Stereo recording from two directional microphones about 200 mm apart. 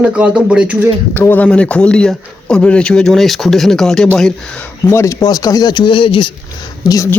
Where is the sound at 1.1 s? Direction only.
10° left (ahead or behind); by 6.3 s 25° left (ahead or behind).